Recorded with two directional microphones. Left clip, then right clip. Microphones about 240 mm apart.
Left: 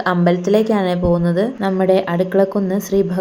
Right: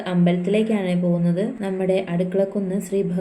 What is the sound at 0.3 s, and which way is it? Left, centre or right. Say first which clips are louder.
A woman's voice: left 5 dB; left.